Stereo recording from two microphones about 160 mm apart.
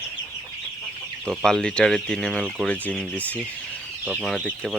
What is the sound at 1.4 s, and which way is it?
Speech, 5° left (ahead or behind).